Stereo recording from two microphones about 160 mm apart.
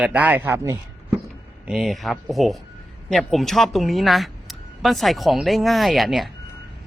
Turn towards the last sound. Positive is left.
turn(degrees=0)  # may be behind; listen again after turning